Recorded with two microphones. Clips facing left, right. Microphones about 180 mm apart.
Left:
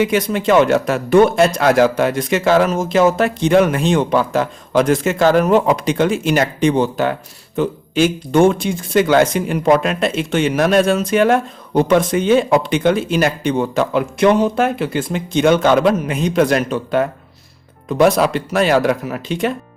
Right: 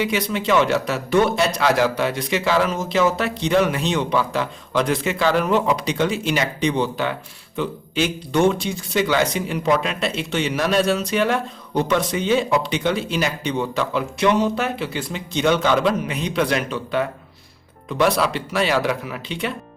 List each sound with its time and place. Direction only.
0.0 s speech: 50° left (ahead or behind)